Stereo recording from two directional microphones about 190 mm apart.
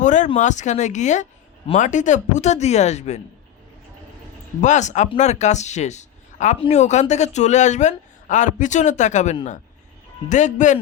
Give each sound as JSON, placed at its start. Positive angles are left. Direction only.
{"t": 0.0, "sound": "a sound", "side_deg": 40}
{"t": 0.3, "sound": "speech", "side_deg": 40}
{"t": 4.6, "sound": "speech", "side_deg": 40}